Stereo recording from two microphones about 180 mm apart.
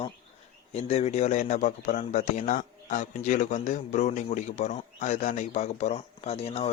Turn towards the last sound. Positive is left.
turn(degrees=35)  # may be behind; listen again after turning